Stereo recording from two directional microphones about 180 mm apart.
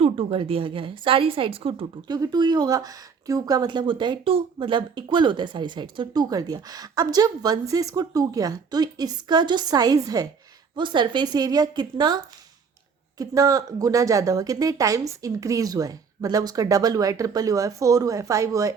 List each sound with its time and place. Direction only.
0.0 s a woman's voice: 30° right (ahead or behind)